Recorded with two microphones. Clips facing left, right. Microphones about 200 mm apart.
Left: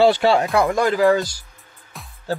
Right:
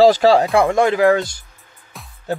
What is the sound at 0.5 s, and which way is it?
Speech, 25° right (ahead or behind).